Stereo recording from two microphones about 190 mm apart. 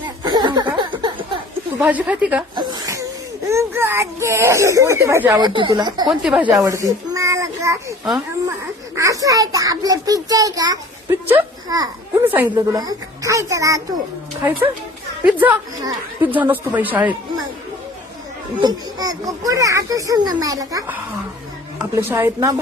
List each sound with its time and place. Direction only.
0.2 s a sound: 25° right (ahead or behind)
1.8 s a child's voice: 10° right (ahead or behind)
2.6 s a sound: 20° right (ahead or behind)
3.5 s a child's voice: 15° right (ahead or behind)
6.1 s speech: 5° right (ahead or behind)
6.5 s a child's voice: 15° right (ahead or behind)
9.0 s a child's voice: 15° right (ahead or behind)
18.6 s a child's voice: 20° right (ahead or behind)